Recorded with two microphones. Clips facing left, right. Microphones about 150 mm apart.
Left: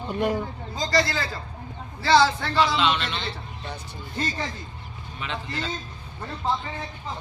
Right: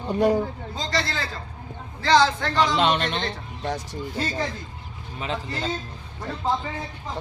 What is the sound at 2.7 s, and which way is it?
Speech, 50° right (ahead or behind).